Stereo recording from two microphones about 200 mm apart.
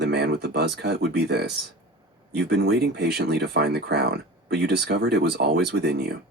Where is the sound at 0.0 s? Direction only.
55° right (ahead or behind).